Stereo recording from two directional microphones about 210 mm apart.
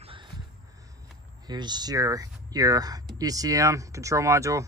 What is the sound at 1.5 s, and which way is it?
Speech, 20° right (ahead or behind).